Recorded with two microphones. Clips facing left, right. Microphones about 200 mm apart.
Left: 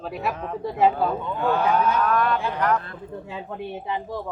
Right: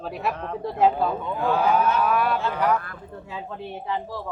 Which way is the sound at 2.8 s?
20° left (ahead or behind).